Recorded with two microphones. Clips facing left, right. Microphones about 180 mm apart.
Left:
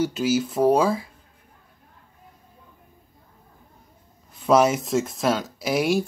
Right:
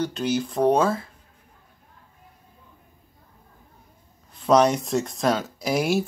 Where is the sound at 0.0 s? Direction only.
5° left (ahead or behind).